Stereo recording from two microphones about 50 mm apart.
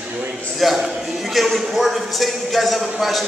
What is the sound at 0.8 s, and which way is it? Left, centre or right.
Speech, centre.